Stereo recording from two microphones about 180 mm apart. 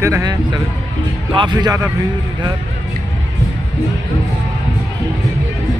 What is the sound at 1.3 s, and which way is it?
Speech, 25° right (ahead or behind).